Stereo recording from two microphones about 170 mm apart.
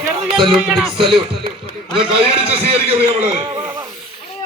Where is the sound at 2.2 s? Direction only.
35° right (ahead or behind).